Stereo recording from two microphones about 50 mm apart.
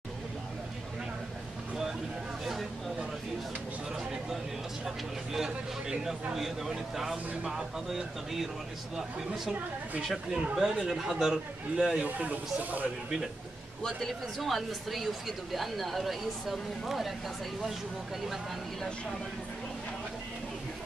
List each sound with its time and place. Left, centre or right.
3.9 s a sound: centre
4.8 s speech: centre
12.0 s speech: right
13.8 s speech: centre